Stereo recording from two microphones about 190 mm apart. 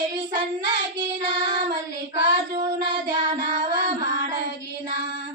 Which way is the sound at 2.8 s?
25° right (ahead or behind).